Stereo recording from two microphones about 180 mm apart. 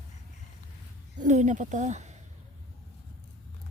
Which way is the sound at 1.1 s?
45° right (ahead or behind).